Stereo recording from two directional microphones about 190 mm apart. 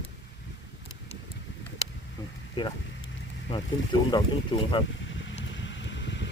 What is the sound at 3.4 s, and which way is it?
Speech, 25° left (ahead or behind).